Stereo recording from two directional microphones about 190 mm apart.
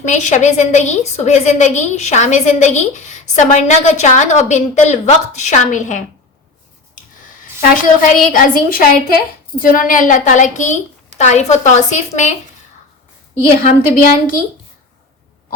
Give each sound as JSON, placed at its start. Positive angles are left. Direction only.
{"t": 0.0, "sound": "a woman's voice", "side_deg": 40}
{"t": 8.0, "sound": "a woman's voice", "side_deg": 45}
{"t": 13.5, "sound": "a woman's voice", "side_deg": 45}